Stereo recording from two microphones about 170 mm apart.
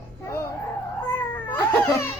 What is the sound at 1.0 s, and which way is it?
Cat, 10° left (ahead or behind).